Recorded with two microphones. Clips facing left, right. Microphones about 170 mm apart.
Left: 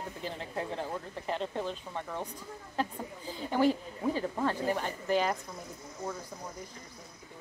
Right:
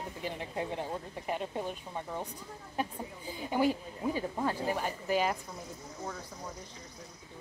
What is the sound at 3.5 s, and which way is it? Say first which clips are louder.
Speech: left 2 dB; 10° right (ahead or behind).